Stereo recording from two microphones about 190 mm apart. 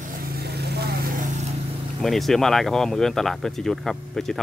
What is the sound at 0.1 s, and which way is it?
Vehicle, 50° right (ahead or behind).